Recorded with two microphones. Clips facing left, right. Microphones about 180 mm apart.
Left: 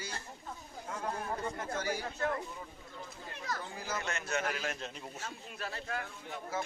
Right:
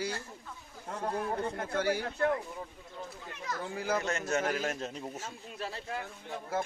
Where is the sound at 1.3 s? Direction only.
60° right (ahead or behind).